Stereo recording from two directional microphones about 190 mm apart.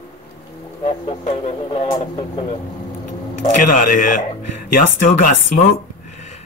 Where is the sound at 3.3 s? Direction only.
40° left (ahead or behind).